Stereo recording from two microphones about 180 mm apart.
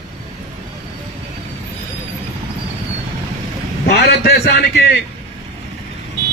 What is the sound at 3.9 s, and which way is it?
Speech, 65° left (ahead or behind).